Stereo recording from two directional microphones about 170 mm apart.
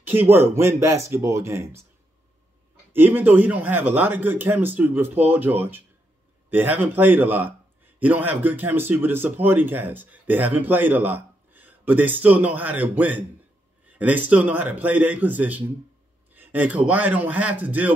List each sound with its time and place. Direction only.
0.0 s a man's voice: 10° right (ahead or behind)
2.9 s a man's voice: 10° right (ahead or behind)